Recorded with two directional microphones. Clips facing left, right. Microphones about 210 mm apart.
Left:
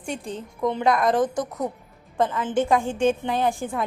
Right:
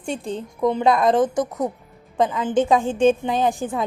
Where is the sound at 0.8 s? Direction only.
25° right (ahead or behind).